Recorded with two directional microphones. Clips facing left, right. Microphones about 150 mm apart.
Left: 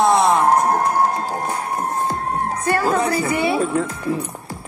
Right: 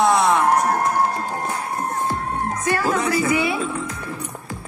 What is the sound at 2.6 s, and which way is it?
A woman's voice, 30° left (ahead or behind).